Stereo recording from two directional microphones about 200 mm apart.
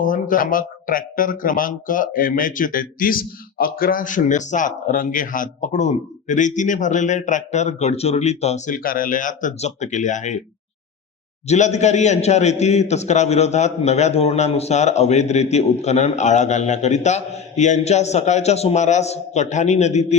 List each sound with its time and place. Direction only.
0.0 s speech: 40° left (ahead or behind)
11.4 s speech: 35° left (ahead or behind)